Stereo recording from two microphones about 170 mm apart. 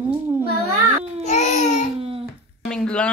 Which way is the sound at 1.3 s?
40° left (ahead or behind).